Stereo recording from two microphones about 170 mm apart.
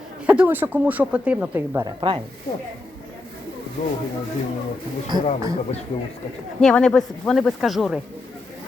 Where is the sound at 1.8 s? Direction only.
30° right (ahead or behind).